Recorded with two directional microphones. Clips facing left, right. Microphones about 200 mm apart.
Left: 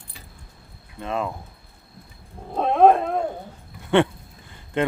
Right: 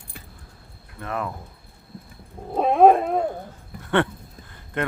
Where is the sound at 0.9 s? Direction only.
20° left (ahead or behind).